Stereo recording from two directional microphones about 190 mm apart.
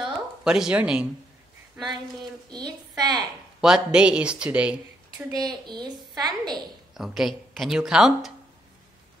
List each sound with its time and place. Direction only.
0.0 s a sound: 5° right (ahead or behind)
3.0 s a woman's voice: 20° right (ahead or behind)
3.6 s speech: 5° right (ahead or behind)
5.1 s a woman's voice: 20° right (ahead or behind)
6.9 s speech: centre (ahead or behind)